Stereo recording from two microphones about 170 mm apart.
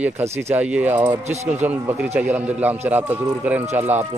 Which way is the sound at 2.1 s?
10° right (ahead or behind).